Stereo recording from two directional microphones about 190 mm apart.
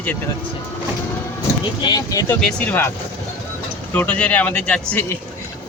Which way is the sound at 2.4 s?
5° left (ahead or behind).